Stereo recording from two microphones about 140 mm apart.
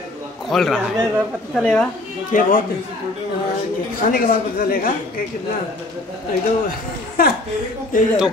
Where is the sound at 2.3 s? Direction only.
65° left (ahead or behind).